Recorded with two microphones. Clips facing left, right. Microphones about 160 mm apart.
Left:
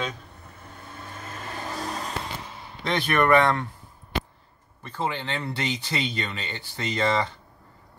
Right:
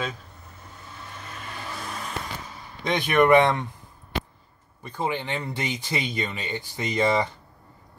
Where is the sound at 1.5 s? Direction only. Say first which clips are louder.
Left 4 dB; 40° left (ahead or behind).